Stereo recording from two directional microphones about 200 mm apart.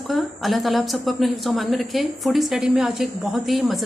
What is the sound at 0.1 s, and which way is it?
A woman's voice, centre (ahead or behind).